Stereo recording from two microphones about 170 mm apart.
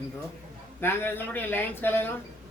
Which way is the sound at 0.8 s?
10° left (ahead or behind).